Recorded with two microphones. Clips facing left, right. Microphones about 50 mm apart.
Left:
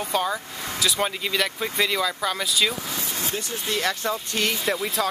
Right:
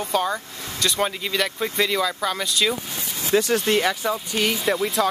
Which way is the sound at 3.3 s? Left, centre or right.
Right.